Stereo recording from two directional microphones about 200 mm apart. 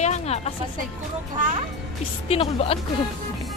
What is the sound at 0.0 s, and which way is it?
Music, 35° left (ahead or behind).